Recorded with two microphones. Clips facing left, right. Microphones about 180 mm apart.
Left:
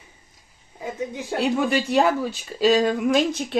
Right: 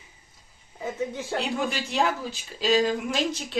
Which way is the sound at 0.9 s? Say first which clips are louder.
Left 1 dB; 15° left (ahead or behind).